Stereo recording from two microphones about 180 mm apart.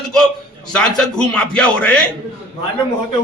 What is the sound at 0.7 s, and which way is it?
A man's voice, 5° left (ahead or behind).